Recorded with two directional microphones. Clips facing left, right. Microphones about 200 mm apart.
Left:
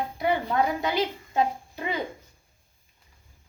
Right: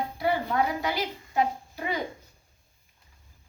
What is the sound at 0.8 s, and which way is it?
Speech, 25° left (ahead or behind).